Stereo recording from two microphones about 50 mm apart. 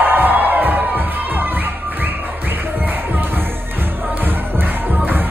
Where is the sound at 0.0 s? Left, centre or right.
Right.